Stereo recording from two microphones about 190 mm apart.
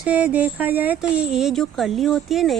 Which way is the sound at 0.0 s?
5° right (ahead or behind).